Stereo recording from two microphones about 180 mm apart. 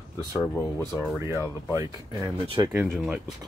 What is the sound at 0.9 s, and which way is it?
Speech, centre (ahead or behind).